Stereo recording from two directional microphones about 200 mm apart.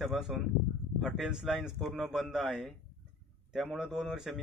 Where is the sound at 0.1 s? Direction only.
Centre (ahead or behind).